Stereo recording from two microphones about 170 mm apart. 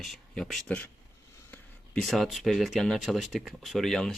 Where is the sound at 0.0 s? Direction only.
Centre (ahead or behind).